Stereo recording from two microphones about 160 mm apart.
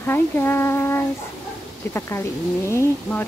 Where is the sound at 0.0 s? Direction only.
15° left (ahead or behind).